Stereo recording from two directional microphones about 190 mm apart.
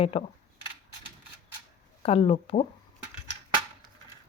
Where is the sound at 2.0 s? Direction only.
30° left (ahead or behind).